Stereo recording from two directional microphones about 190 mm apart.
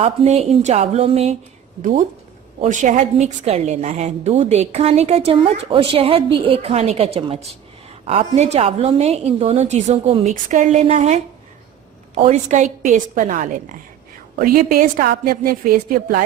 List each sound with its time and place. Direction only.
0.0 s a woman's voice: 30° right (ahead or behind); by 16.2 s 50° right (ahead or behind)